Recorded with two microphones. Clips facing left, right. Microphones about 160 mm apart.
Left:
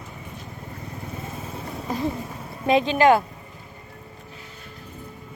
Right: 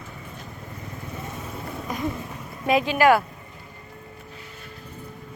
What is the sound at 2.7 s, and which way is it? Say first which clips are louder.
Speech: left 1 dB; 25° left (ahead or behind).